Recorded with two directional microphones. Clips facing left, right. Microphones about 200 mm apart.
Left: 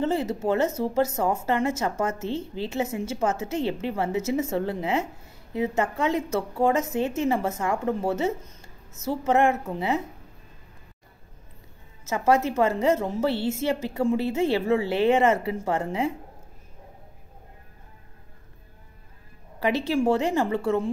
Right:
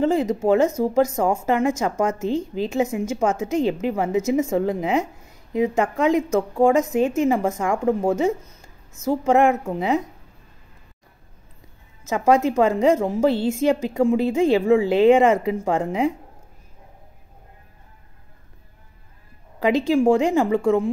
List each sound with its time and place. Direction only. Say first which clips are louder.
0.0 s speech: right 5 dB; 15° right (ahead or behind)
8.5 s a sound: even; 10° right (ahead or behind)
9.2 s speech: right 4 dB; 15° right (ahead or behind)
12.0 s speech: right 4 dB; 15° right (ahead or behind)
19.7 s speech: right 6 dB; 15° right (ahead or behind)